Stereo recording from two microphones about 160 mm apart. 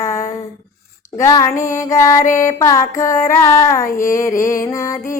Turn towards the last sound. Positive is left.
turn(degrees=20)  # may be behind; listen again after turning